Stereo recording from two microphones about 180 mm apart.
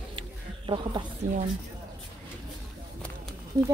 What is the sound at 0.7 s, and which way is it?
Speech, 25° right (ahead or behind).